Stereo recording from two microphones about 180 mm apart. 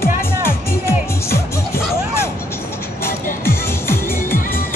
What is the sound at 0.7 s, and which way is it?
Music, 15° left (ahead or behind).